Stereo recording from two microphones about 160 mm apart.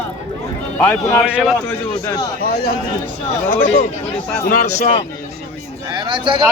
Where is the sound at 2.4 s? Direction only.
70° left (ahead or behind).